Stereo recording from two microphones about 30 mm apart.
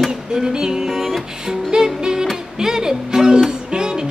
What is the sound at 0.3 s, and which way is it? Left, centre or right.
Music, right.